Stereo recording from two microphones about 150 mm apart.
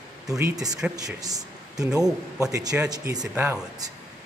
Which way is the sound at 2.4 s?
25° right (ahead or behind).